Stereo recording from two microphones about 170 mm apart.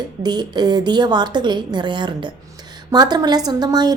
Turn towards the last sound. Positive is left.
turn(degrees=-25)  # may be behind; listen again after turning